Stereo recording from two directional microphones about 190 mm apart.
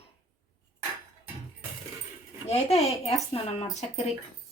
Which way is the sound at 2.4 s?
35° left (ahead or behind).